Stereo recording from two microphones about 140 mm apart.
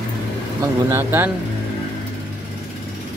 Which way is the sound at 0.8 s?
15° right (ahead or behind).